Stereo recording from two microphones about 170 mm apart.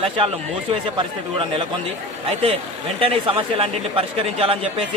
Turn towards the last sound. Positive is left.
turn(degrees=-35)  # may be behind; listen again after turning